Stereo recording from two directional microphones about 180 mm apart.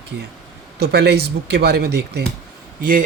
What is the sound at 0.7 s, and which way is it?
Speech, 65° right (ahead or behind).